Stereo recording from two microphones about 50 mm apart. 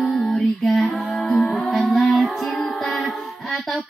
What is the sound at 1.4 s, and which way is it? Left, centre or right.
Music, centre.